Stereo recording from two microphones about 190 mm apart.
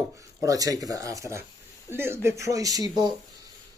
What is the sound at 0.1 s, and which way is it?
Speech, 15° right (ahead or behind).